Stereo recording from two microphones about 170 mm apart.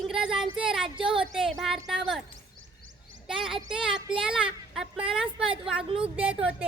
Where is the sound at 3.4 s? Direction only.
Centre (ahead or behind).